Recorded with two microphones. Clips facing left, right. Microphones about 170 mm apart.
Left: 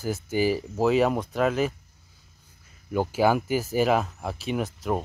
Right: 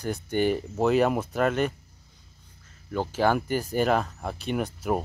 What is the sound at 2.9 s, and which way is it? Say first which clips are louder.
Speech: left 2 dB; 10° left (ahead or behind).